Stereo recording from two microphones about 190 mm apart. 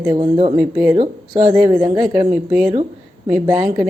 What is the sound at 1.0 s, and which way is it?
Speech, 30° right (ahead or behind).